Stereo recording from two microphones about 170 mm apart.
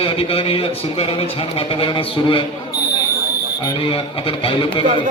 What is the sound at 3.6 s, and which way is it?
Speech, 30° left (ahead or behind).